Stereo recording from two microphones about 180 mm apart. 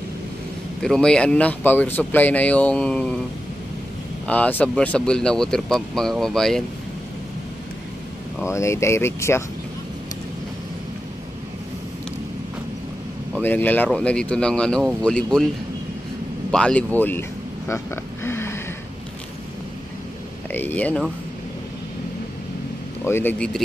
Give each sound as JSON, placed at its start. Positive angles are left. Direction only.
{"t": 0.8, "sound": "speech", "side_deg": 5}
{"t": 4.3, "sound": "speech", "side_deg": 10}
{"t": 8.5, "sound": "speech", "side_deg": 15}
{"t": 13.3, "sound": "speech", "side_deg": 10}
{"t": 16.5, "sound": "a sound", "side_deg": 5}
{"t": 20.5, "sound": "speech", "side_deg": 10}
{"t": 23.0, "sound": "speech", "side_deg": 10}